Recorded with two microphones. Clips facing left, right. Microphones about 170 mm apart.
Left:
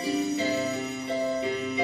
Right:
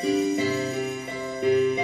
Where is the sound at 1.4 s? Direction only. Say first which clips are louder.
Right 9 dB; 55° right (ahead or behind).